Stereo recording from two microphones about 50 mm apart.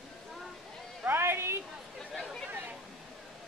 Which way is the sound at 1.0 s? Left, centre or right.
Right.